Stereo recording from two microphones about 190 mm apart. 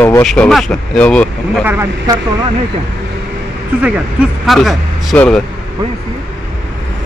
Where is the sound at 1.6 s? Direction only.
10° right (ahead or behind).